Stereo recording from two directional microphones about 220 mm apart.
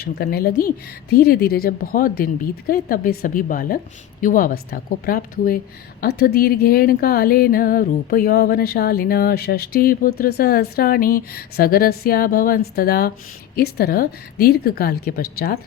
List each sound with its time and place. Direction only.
0.0 s speech: 45° left (ahead or behind)